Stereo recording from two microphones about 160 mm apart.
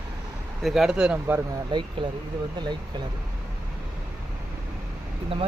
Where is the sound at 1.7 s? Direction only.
30° right (ahead or behind).